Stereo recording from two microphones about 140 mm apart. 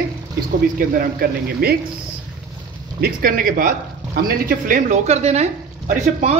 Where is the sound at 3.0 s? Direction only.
90° right.